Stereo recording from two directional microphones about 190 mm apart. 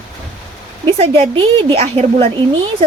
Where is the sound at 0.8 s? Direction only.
25° right (ahead or behind).